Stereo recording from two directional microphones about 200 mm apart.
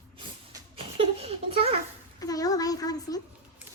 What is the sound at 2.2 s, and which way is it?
Speech, 20° left (ahead or behind).